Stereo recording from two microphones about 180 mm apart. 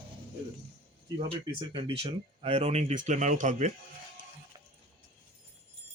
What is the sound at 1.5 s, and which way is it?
Speech, 30° right (ahead or behind).